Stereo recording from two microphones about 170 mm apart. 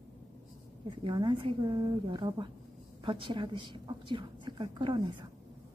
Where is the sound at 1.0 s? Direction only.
30° right (ahead or behind).